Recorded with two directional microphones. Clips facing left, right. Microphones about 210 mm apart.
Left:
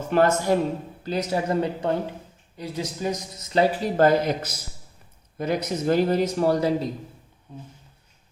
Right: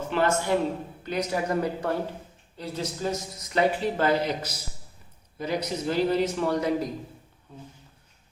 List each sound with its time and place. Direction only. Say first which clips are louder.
0.1 s a man's voice: left 5 dB; 40° left (ahead or behind)
1.0 s a man's voice: left 2 dB; 30° left (ahead or behind)
3.5 s a man's voice: left 3 dB; 35° left (ahead or behind)